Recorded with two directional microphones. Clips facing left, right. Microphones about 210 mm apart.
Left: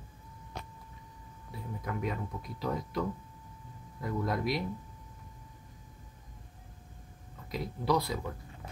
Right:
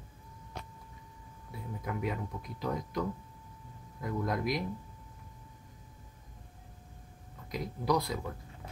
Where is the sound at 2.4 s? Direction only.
Centre (ahead or behind).